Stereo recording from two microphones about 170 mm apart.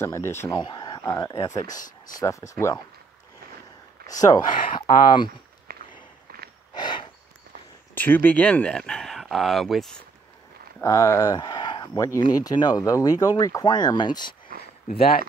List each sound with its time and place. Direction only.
0.0 s speech: 15° left (ahead or behind)
1.7 s speech: 50° left (ahead or behind)
2.1 s speech: 20° left (ahead or behind)
4.1 s speech: 20° left (ahead or behind)
5.7 s walk: 65° right (ahead or behind)
6.7 s a sound: 25° left (ahead or behind)
7.9 s speech: 10° left (ahead or behind)
10.8 s speech: 20° left (ahead or behind)
14.9 s speech: 60° left (ahead or behind)